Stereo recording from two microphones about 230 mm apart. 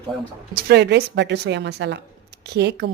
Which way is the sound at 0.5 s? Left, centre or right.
Right.